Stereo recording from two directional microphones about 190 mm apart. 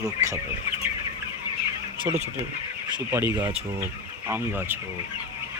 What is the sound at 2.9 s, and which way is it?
Speech, 15° right (ahead or behind).